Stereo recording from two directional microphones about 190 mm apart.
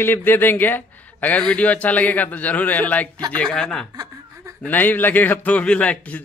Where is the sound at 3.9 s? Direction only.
20° right (ahead or behind).